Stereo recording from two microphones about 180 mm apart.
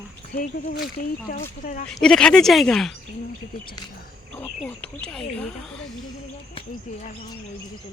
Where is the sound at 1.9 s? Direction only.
5° left (ahead or behind).